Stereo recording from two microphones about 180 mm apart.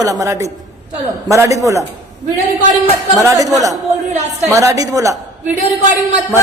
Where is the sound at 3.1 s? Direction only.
20° right (ahead or behind).